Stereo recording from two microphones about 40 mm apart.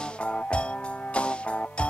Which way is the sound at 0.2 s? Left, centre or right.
Left.